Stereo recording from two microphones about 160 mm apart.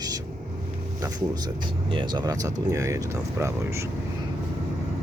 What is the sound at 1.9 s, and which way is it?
Speech, 30° right (ahead or behind).